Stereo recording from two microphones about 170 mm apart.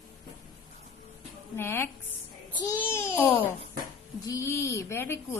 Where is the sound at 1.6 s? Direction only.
15° left (ahead or behind).